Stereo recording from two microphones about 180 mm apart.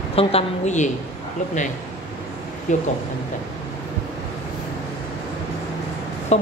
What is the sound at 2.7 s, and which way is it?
Speech, 45° left (ahead or behind).